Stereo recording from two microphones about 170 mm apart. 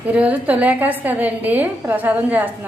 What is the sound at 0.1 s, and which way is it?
A woman's voice, 10° right (ahead or behind).